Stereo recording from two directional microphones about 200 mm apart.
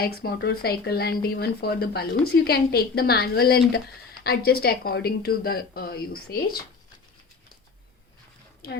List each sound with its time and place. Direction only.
0.0 s speech: 50° left (ahead or behind)